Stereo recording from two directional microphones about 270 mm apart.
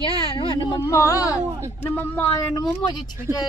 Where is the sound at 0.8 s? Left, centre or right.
Centre.